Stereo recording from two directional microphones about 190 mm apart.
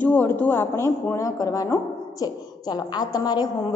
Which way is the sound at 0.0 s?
10° left (ahead or behind).